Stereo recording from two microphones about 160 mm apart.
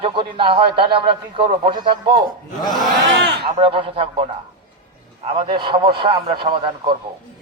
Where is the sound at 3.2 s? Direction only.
90° right.